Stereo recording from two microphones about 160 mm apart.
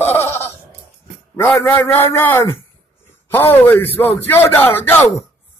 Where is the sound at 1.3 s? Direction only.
15° left (ahead or behind).